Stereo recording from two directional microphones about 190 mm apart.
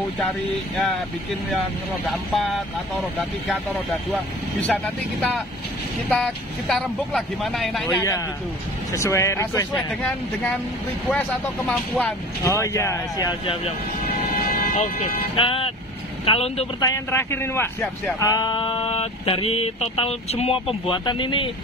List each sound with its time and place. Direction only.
2.3 s speech: centre (ahead or behind)
6.0 s speech: 5° left (ahead or behind)
8.9 s speech: 15° left (ahead or behind)
12.4 s speech: 15° left (ahead or behind)
14.7 s speech: 45° left (ahead or behind)
15.3 s speech: 30° left (ahead or behind)
16.8 s speech: 15° left (ahead or behind)